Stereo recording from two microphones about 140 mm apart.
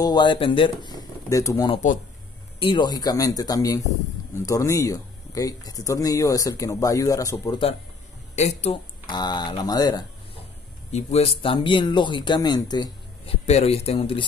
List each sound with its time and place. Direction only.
0.0 s speech: 30° left (ahead or behind)
2.6 s speech: 35° left (ahead or behind)
8.4 s speech: 50° left (ahead or behind)
9.1 s speech: 30° left (ahead or behind)
10.9 s speech: 55° left (ahead or behind); by 13.3 s 30° left (ahead or behind)
13.3 s speech: 45° left (ahead or behind)